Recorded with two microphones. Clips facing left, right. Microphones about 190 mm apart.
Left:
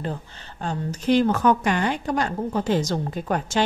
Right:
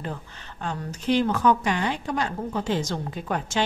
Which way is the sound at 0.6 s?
40° left (ahead or behind).